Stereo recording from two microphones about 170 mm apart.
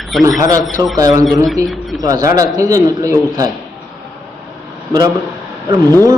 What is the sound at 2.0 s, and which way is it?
A man's voice, 20° right (ahead or behind).